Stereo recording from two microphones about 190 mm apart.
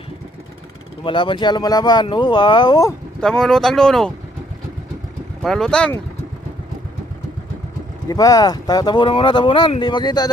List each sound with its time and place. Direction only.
1.0 s speech: 25° left (ahead or behind)
3.2 s speech: 5° left (ahead or behind)
5.4 s speech: centre (ahead or behind)
8.0 s speech: 20° left (ahead or behind)